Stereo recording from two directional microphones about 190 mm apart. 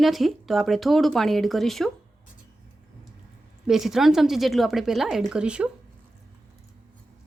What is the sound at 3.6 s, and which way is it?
Speech, 5° right (ahead or behind).